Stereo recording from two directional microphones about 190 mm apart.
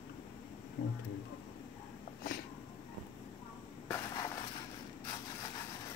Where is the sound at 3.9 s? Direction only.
15° left (ahead or behind).